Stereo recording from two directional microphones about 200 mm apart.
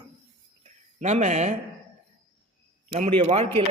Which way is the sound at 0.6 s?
35° right (ahead or behind).